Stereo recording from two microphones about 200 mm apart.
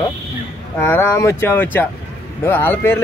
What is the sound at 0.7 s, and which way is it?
Speech, 10° left (ahead or behind).